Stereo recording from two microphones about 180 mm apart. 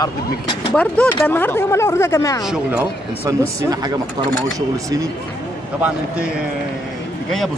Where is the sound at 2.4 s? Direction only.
5° right (ahead or behind).